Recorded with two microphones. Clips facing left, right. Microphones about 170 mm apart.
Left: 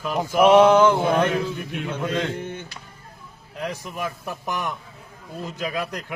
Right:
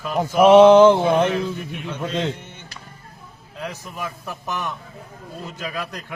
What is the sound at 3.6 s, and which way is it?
A man's voice, 15° left (ahead or behind).